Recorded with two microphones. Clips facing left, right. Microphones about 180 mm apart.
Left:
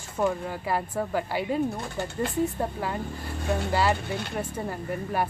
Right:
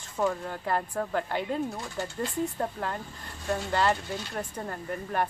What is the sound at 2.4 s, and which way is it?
Speech, 5° left (ahead or behind).